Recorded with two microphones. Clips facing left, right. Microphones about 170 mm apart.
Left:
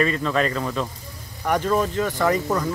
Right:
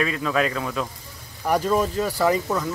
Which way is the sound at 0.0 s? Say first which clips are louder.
Left 1 dB; 5° right (ahead or behind).